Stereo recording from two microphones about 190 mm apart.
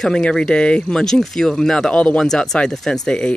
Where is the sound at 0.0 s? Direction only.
5° left (ahead or behind).